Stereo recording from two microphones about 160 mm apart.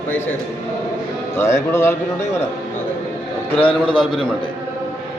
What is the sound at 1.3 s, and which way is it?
Speech, 15° left (ahead or behind).